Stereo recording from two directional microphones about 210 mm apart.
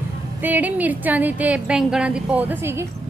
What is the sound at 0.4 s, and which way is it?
A woman's voice, 10° right (ahead or behind).